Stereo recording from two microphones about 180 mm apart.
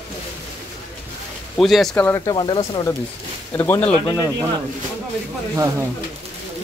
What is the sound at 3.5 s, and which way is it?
Speech, 10° left (ahead or behind).